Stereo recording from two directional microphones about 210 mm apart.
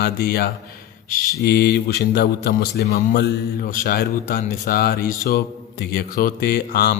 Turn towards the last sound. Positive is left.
turn(degrees=45)  # may be behind; listen again after turning